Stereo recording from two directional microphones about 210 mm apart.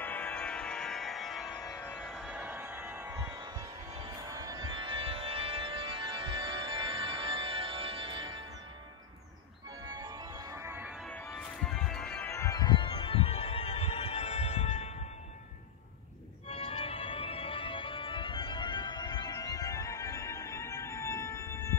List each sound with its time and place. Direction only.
0.0 s music: 5° left (ahead or behind)
1.6 s music: 15° left (ahead or behind)
2.0 s music: centre (ahead or behind); by 8.5 s 20° right (ahead or behind)
9.9 s music: 20° right (ahead or behind)
11.1 s music: 5° left (ahead or behind); by 14.9 s 30° left (ahead or behind)
16.4 s organ: 30° left (ahead or behind); by 21.7 s 10° left (ahead or behind)